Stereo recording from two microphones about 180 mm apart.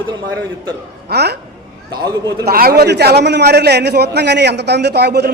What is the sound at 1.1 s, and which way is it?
Speech, 65° right (ahead or behind).